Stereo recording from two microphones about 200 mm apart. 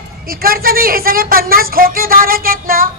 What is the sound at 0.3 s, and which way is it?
Speech, 45° right (ahead or behind).